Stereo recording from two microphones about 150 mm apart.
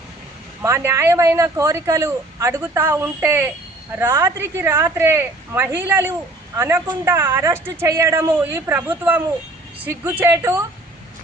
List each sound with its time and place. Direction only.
0.6 s a man's voice: 20° right (ahead or behind)